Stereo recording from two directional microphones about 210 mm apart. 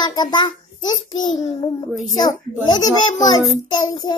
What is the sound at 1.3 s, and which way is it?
Speech, 35° left (ahead or behind).